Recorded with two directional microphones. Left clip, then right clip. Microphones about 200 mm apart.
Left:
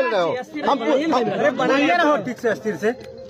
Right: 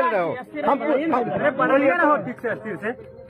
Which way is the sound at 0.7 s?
20° left (ahead or behind).